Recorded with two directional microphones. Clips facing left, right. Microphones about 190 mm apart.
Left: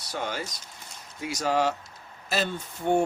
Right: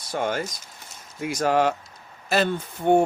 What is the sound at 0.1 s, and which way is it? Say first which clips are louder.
Speech: right 6 dB; 50° right (ahead or behind).